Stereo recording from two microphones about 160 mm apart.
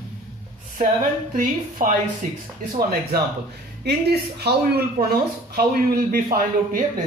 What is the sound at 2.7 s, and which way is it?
Speech, 70° right (ahead or behind).